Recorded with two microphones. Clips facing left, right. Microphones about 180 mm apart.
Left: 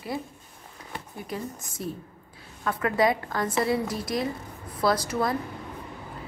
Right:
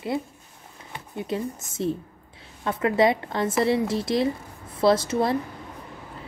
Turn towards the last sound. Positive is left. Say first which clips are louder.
# right 4 dB
turn(degrees=-25)  # may be behind; listen again after turning